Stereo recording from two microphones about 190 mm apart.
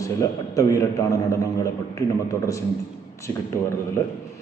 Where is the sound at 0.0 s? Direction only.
15° left (ahead or behind).